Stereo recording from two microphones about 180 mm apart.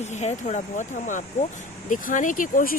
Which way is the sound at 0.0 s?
40° left (ahead or behind).